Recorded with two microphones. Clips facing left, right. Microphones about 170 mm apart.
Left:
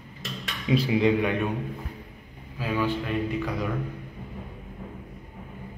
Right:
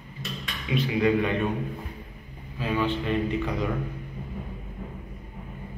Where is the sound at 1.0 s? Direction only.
15° left (ahead or behind).